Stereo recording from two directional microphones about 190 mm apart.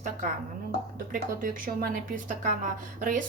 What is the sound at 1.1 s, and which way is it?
Speech, 45° right (ahead or behind).